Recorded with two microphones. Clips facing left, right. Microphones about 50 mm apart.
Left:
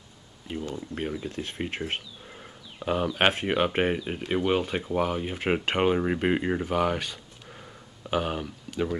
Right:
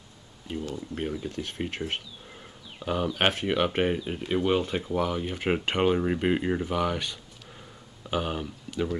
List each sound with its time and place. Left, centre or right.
0.5 s speech: centre
2.9 s speech: centre
5.7 s speech: left
5.9 s speech: left